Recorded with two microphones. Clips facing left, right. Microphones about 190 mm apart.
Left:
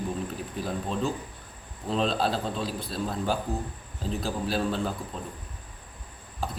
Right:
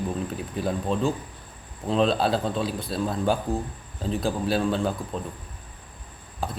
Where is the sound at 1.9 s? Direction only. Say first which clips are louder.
Right 4 dB; centre (ahead or behind).